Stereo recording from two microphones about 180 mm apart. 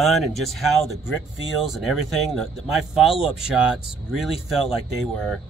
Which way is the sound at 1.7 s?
Centre (ahead or behind).